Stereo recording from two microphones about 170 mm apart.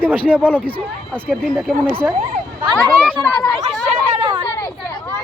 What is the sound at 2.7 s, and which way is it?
Speech, 10° left (ahead or behind).